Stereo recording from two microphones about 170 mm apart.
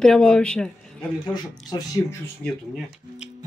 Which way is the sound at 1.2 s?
25° left (ahead or behind).